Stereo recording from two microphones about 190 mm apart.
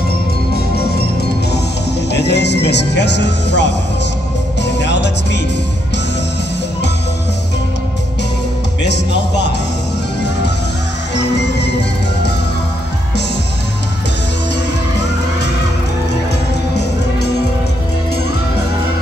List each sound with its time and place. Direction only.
1.5 s speech: 60° left (ahead or behind)
4.6 s music: 65° left (ahead or behind)
8.8 s speech: 65° left (ahead or behind)
11.1 s music: 65° left (ahead or behind)